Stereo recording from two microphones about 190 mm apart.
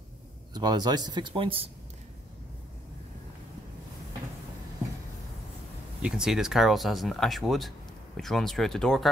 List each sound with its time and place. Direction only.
0.6 s speech: 20° right (ahead or behind)
6.0 s speech: 5° right (ahead or behind)